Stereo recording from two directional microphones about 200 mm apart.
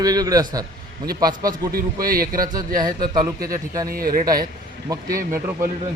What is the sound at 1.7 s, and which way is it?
Speech, 45° right (ahead or behind).